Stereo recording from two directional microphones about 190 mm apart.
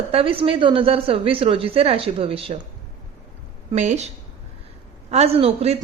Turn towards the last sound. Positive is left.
turn(degrees=-30)  # may be behind; listen again after turning